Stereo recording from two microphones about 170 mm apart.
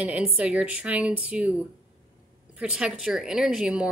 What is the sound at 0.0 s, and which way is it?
Speech, 5° right (ahead or behind).